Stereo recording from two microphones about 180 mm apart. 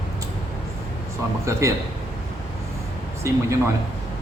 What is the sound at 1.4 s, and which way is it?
Speech, 15° right (ahead or behind).